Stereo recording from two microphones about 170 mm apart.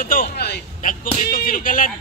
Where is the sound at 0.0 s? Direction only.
55° left (ahead or behind).